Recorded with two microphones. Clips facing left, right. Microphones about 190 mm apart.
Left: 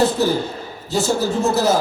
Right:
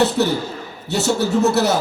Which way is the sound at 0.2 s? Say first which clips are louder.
Left 1 dB; 70° right (ahead or behind).